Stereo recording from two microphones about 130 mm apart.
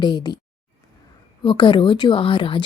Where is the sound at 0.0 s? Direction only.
35° left (ahead or behind).